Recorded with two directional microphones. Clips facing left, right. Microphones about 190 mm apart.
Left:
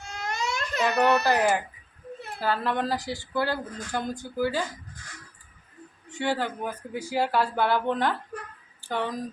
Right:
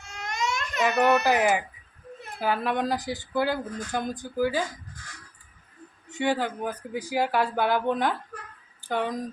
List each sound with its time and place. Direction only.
0.1 s baby cry: 35° left (ahead or behind)
1.2 s speech: 15° right (ahead or behind)
6.1 s speech: 15° right (ahead or behind)